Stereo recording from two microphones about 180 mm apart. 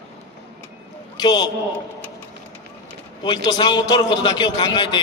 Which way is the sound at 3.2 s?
25° left (ahead or behind).